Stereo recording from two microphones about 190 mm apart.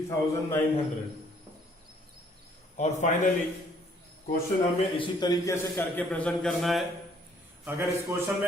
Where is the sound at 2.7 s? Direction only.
40° left (ahead or behind).